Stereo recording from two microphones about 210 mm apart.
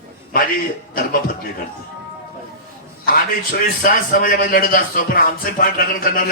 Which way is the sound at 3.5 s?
40° left (ahead or behind).